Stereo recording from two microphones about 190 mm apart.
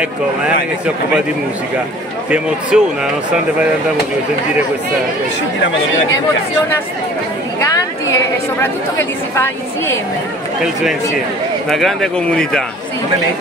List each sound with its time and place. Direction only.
2.7 s speech: 5° right (ahead or behind)
7.7 s chatter: 15° left (ahead or behind)
10.6 s speech: 5° right (ahead or behind)